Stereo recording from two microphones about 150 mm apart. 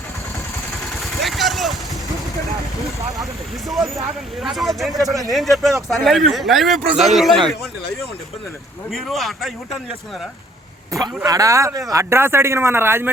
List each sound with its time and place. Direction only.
1.2 s vehicle: centre (ahead or behind)
3.7 s speech: centre (ahead or behind)
8.9 s speech: centre (ahead or behind)
11.3 s speech: 20° right (ahead or behind)